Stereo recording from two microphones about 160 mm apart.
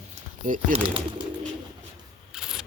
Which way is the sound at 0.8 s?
35° right (ahead or behind).